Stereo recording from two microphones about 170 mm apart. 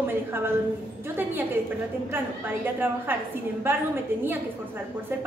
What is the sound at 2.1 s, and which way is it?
A woman's voice, 10° right (ahead or behind).